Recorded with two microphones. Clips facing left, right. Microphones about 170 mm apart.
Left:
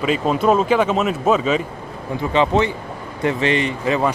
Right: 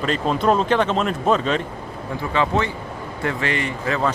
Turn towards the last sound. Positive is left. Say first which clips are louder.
# left 3 dB
turn(degrees=15)  # may be behind; listen again after turning